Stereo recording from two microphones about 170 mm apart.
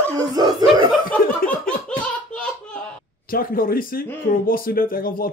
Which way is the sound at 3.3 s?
55° left (ahead or behind).